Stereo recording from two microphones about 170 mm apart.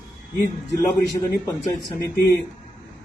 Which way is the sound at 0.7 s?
15° left (ahead or behind).